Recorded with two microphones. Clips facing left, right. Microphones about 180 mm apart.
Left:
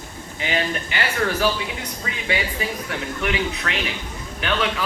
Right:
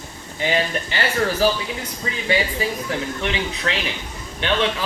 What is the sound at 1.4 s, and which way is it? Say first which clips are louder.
Speech: right 4 dB; 35° right (ahead or behind).